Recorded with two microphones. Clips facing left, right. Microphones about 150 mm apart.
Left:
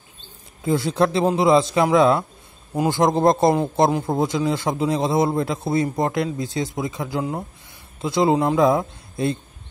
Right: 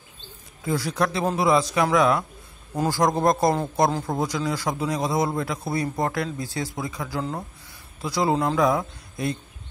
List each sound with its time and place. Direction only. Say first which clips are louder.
0.7 s a man's voice: left 5 dB; 25° left (ahead or behind)